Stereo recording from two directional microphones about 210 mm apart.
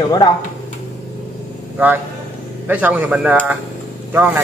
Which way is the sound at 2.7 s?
10° right (ahead or behind).